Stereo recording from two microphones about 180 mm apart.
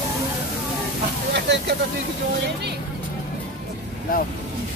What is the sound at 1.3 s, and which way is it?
Speech, 75° right (ahead or behind).